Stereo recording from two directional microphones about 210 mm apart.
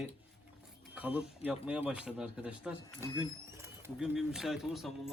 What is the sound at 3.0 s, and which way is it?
Speech, 20° left (ahead or behind).